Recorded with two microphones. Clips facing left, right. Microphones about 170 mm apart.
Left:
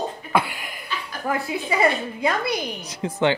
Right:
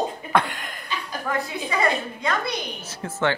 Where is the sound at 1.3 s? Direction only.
25° left (ahead or behind).